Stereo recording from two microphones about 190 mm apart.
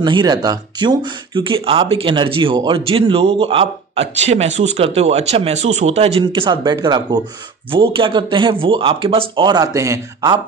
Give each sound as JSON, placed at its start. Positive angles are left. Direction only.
{"t": 0.0, "sound": "speech", "side_deg": -25}